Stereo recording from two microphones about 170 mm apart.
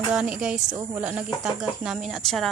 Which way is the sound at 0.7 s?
20° right (ahead or behind).